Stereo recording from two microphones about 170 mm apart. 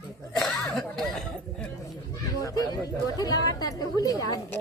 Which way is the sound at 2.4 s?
20° left (ahead or behind).